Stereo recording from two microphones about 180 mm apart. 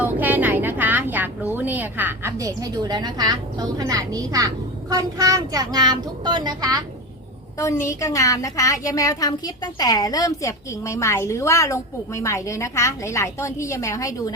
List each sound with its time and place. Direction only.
0.0 s a woman's voice: 10° right (ahead or behind)
8.0 s a woman's voice: 20° left (ahead or behind)